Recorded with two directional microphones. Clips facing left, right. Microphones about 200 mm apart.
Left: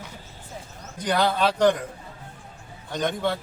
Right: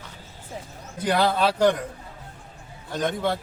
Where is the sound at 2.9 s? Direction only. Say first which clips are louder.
Even; centre (ahead or behind).